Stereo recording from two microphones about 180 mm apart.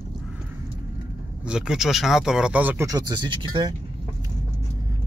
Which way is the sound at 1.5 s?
Centre (ahead or behind).